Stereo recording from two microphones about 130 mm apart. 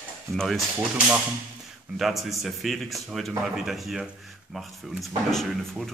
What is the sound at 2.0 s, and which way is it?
Speech, centre (ahead or behind).